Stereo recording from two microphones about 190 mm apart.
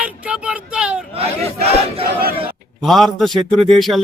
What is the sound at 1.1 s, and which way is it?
Battle cry, 35° right (ahead or behind).